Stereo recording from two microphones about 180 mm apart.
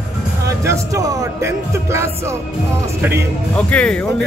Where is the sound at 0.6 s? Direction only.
15° right (ahead or behind).